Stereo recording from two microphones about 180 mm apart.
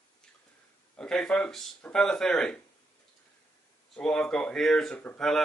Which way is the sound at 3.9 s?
5° left (ahead or behind).